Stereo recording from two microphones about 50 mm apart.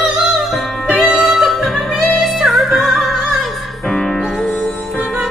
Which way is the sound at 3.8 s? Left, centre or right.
Centre.